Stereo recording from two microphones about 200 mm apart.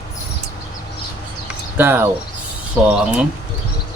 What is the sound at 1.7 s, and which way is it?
Speech, 10° right (ahead or behind).